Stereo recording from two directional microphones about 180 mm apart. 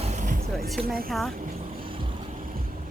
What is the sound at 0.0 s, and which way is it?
Music, 40° right (ahead or behind).